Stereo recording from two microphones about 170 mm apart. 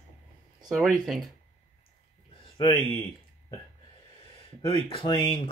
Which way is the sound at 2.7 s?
35° right (ahead or behind).